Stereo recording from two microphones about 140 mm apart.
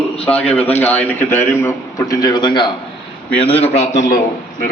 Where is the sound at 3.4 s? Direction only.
45° left (ahead or behind).